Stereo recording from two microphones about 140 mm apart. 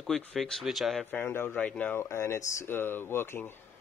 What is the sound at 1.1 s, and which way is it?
Speech, 15° left (ahead or behind).